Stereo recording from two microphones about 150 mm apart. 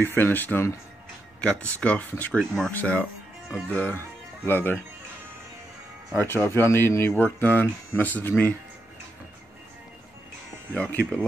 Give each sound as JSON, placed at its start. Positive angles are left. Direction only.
{"t": 0.0, "sound": "speech", "side_deg": 15}
{"t": 6.2, "sound": "speech", "side_deg": 15}
{"t": 10.8, "sound": "speech", "side_deg": 10}